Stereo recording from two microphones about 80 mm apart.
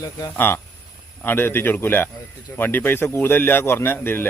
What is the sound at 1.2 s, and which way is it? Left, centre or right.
A man's voice, left.